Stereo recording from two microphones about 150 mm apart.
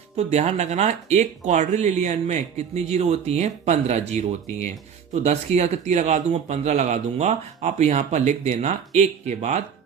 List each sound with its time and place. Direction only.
0.2 s speech: 45° right (ahead or behind)